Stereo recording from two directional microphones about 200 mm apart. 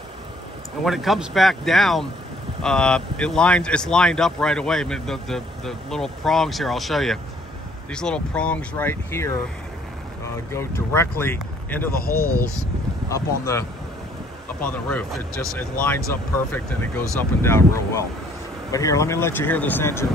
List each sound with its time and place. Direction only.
0.8 s speech: centre (ahead or behind)
10.5 s speech: 15° left (ahead or behind)
12.0 s speech: 45° left (ahead or behind)
13.1 s speech: 15° left (ahead or behind)